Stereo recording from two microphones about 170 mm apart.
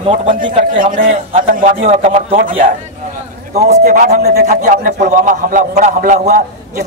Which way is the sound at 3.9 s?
60° right (ahead or behind).